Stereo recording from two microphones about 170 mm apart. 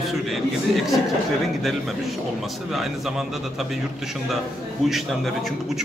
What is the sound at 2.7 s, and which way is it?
Speech, centre (ahead or behind).